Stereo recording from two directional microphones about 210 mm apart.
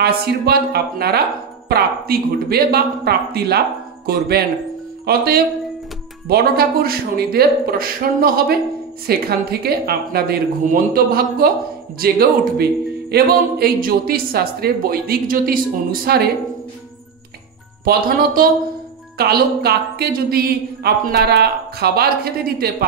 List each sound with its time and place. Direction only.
0.0 s a woman's voice: 50° right (ahead or behind)
17.8 s a woman's voice: 45° right (ahead or behind)